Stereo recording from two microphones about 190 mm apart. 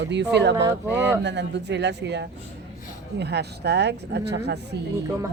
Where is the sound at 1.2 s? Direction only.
65° right (ahead or behind).